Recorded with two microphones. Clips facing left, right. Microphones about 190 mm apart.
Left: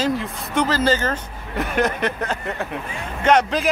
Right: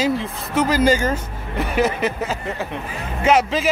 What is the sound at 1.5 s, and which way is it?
Speech, centre (ahead or behind).